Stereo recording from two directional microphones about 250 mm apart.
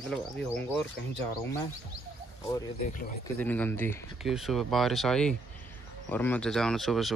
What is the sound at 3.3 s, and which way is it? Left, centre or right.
Speech, centre.